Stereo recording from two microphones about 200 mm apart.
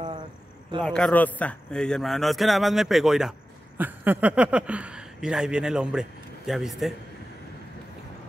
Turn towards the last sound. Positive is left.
turn(degrees=0)  # may be behind; listen again after turning